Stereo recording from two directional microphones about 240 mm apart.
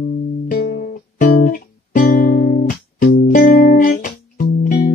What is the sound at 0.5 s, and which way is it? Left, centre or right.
Music, left.